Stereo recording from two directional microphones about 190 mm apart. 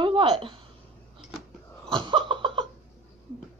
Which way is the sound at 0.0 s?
25° right (ahead or behind).